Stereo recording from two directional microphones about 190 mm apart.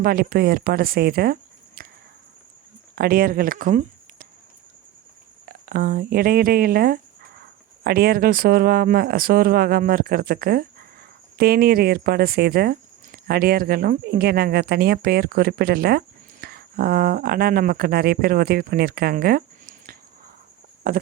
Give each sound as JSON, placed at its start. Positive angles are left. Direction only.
{"t": 0.0, "sound": "speech", "side_deg": -50}
{"t": 2.9, "sound": "speech", "side_deg": -50}
{"t": 5.5, "sound": "speech", "side_deg": -50}